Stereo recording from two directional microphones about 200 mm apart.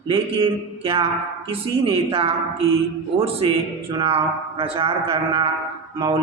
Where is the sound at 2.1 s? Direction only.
30° right (ahead or behind).